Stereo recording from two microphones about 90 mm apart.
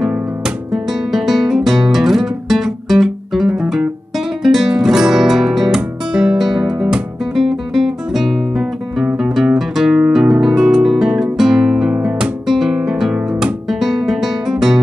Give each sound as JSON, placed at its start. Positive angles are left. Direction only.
{"t": 1.1, "sound": "guitar", "side_deg": -5}
{"t": 4.4, "sound": "music", "side_deg": -5}
{"t": 9.2, "sound": "guitar", "side_deg": -5}